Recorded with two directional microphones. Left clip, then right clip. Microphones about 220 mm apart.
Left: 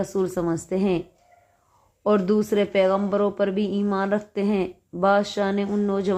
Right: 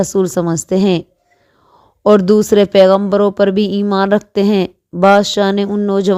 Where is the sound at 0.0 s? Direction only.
40° right (ahead or behind).